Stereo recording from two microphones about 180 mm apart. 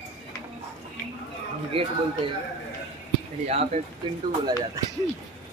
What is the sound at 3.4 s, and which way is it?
Speech, 40° right (ahead or behind).